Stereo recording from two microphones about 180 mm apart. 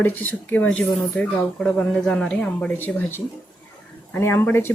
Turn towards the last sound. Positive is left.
turn(degrees=10)  # may be behind; listen again after turning